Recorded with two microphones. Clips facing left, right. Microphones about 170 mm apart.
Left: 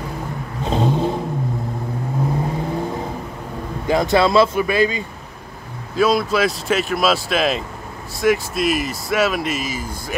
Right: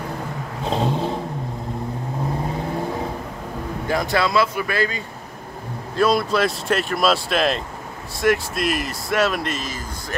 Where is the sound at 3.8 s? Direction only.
20° left (ahead or behind).